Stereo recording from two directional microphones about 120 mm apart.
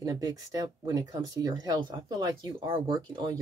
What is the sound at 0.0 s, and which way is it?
Speech, 30° right (ahead or behind).